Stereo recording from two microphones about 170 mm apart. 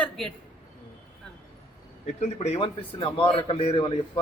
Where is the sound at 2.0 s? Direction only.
40° left (ahead or behind).